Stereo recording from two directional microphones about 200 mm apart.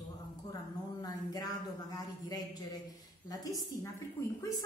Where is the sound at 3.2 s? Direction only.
20° left (ahead or behind).